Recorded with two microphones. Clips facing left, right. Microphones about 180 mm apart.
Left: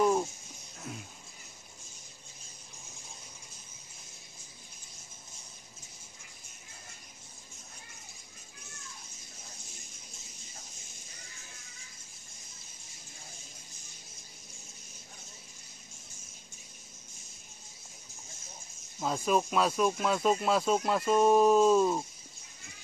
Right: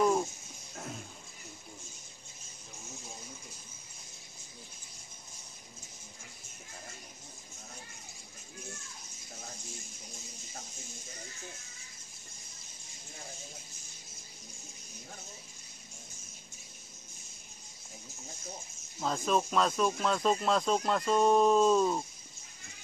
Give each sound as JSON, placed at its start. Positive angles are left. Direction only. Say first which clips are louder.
{"t": 0.0, "sound": "music", "louder": "left 1 dB", "side_deg": 0}
{"t": 18.9, "sound": "speech", "louder": "left 1 dB", "side_deg": 5}